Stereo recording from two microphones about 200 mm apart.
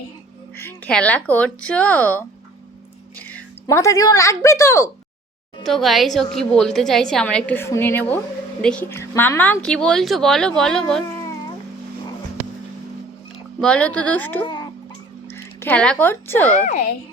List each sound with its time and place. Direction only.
0.5 s a woman's voice: 10° left (ahead or behind)
5.6 s a woman's voice: centre (ahead or behind)
13.6 s a woman's voice: 5° left (ahead or behind)
14.4 s a sound: 25° left (ahead or behind)
15.3 s speech: 10° left (ahead or behind)
16.5 s a child's voice: 35° left (ahead or behind)